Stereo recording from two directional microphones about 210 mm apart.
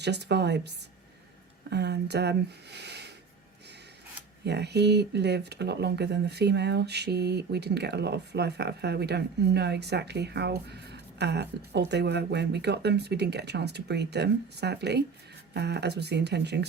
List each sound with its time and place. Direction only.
0.0 s speech: 55° right (ahead or behind)
4.4 s speech: 50° right (ahead or behind)